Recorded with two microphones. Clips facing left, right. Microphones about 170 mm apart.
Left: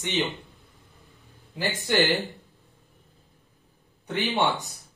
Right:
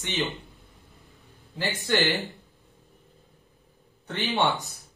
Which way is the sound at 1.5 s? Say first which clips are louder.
Left 1 dB; 20° left (ahead or behind).